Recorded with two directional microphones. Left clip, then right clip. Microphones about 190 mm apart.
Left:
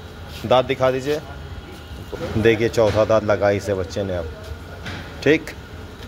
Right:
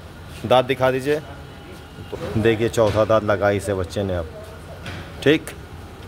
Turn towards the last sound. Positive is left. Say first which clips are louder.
# even
turn(degrees=-15)  # may be behind; listen again after turning